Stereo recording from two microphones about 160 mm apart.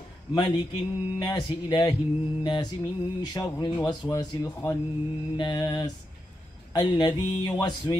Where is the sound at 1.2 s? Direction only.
25° left (ahead or behind).